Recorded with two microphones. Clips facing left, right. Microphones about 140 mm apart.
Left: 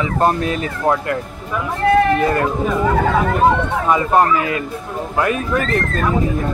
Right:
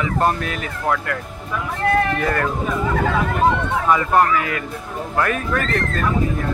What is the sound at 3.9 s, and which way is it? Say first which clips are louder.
Speech: left 2 dB; 20° left (ahead or behind).